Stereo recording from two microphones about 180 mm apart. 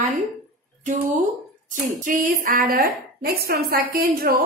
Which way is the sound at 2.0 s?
45° right (ahead or behind).